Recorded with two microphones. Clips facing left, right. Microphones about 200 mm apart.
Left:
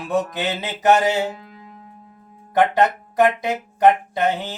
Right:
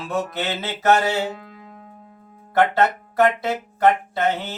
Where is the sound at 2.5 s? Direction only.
15° left (ahead or behind).